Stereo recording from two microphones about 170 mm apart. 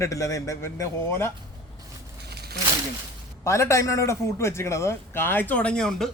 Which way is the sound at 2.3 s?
70° right (ahead or behind).